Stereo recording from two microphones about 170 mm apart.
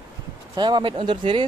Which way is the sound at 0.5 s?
30° right (ahead or behind).